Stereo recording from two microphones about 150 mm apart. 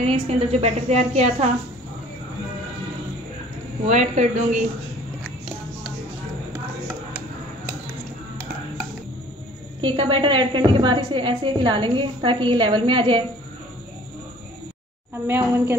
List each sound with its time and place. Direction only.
0.0 s a woman's voice: 45° right (ahead or behind)
3.8 s a woman's voice: 50° right (ahead or behind)
9.8 s a woman's voice: 35° right (ahead or behind)
15.2 s a woman's voice: 15° right (ahead or behind)